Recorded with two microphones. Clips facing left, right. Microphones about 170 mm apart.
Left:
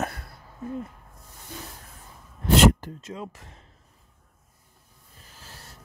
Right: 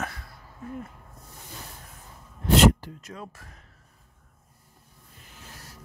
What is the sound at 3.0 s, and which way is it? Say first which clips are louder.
Speech: left 5 dB; 25° left (ahead or behind).